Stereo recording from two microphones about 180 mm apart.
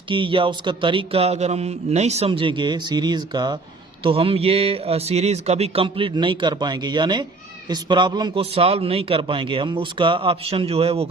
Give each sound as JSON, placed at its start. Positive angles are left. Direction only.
{"t": 0.1, "sound": "a man's voice", "side_deg": -30}